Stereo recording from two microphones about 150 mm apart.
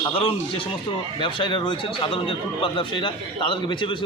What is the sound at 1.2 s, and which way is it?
A man's voice, 35° left (ahead or behind).